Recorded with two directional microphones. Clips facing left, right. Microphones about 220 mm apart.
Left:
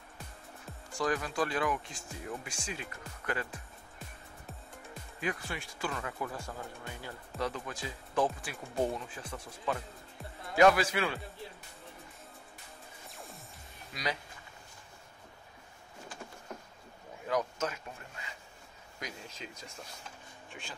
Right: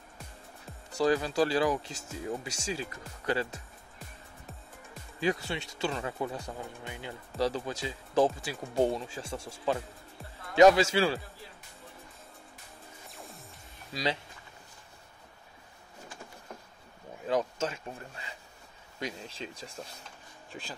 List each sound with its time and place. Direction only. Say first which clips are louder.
0.9 s speech: right 6 dB; 30° right (ahead or behind)
5.2 s speech: right 6 dB; 25° right (ahead or behind)
7.3 s speech: right 6 dB; 30° right (ahead or behind)
17.3 s speech: right 3 dB; 30° right (ahead or behind)
18.9 s speech: right 6 dB; 30° right (ahead or behind)